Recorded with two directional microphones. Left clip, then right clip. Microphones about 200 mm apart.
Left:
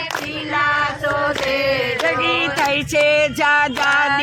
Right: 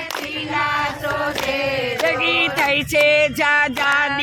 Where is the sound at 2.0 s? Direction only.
5° right (ahead or behind).